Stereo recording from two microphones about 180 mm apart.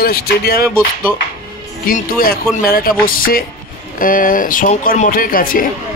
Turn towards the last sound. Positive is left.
turn(degrees=50)  # may be behind; listen again after turning